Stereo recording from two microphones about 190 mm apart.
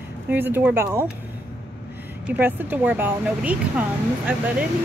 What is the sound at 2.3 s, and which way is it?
Speech, 10° right (ahead or behind).